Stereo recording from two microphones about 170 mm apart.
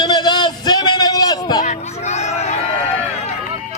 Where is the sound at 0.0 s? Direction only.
25° left (ahead or behind).